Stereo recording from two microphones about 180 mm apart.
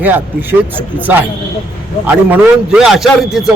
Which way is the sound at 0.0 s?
10° right (ahead or behind).